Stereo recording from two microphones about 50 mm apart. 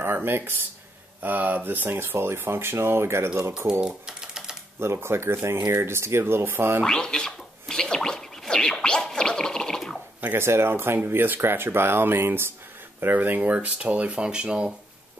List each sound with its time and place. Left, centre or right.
0.0 s speech: right
2.0 s speech: right
3.8 s typing: centre
4.7 s speech: right
6.8 s a sound: centre
10.3 s speech: right
13.0 s speech: right; by 14.7 s centre